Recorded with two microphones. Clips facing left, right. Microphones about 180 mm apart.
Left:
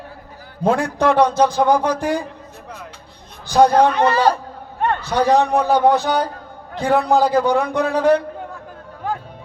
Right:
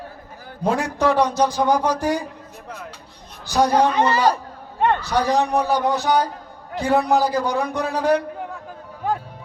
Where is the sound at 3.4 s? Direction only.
55° left (ahead or behind).